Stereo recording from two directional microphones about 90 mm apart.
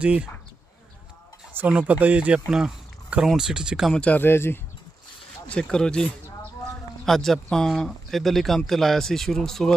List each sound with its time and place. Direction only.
0.0 s speech: 10° right (ahead or behind)
1.5 s speech: 15° right (ahead or behind)
3.9 s speech: 10° left (ahead or behind)
4.2 s speech: 25° left (ahead or behind)
5.5 s speech: 10° left (ahead or behind)